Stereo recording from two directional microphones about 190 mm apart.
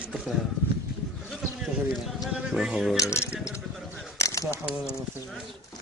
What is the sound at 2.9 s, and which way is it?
Speech, 15° left (ahead or behind).